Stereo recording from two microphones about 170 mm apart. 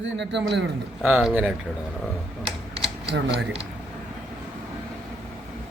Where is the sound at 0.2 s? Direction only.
90° right.